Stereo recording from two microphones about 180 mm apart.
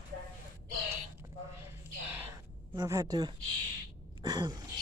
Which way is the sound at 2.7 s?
15° right (ahead or behind).